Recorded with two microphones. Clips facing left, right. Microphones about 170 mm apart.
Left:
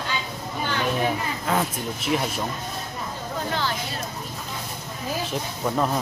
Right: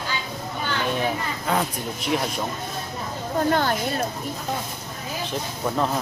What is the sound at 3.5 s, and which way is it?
Speech, 50° right (ahead or behind).